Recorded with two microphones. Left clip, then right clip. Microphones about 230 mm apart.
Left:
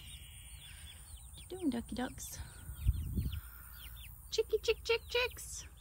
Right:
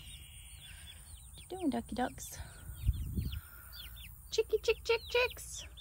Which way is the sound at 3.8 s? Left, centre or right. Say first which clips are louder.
Right 4 dB; centre.